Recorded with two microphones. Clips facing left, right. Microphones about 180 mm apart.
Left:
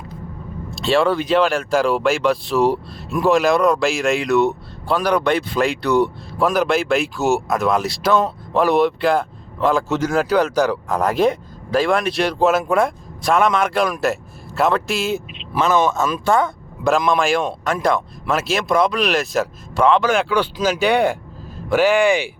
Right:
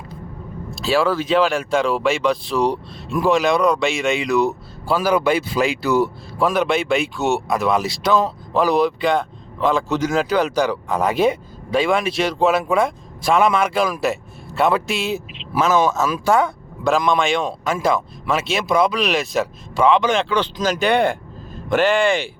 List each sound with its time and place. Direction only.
0.8 s speech: centre (ahead or behind)